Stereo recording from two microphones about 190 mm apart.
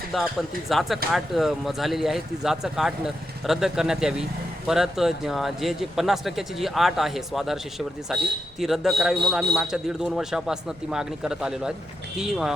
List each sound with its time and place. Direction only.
0.1 s speech: centre (ahead or behind)